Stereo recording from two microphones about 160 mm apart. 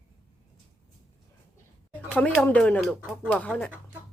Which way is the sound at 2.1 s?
5° left (ahead or behind).